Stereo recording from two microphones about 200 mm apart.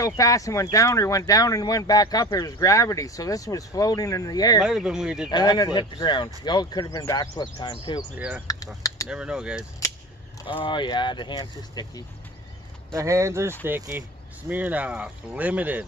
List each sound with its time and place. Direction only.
0.0 s speech: 15° left (ahead or behind)
4.6 s speech: 5° right (ahead or behind)
5.3 s speech: 20° left (ahead or behind)
8.5 s a sound: 20° left (ahead or behind)
9.0 s speech: 5° right (ahead or behind)
10.6 s speech: 25° left (ahead or behind)
12.9 s speech: 15° right (ahead or behind)